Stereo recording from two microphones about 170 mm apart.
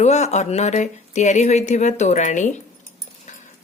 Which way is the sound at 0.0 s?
40° left (ahead or behind).